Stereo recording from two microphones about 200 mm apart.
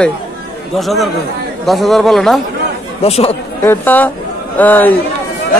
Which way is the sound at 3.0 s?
30° left (ahead or behind).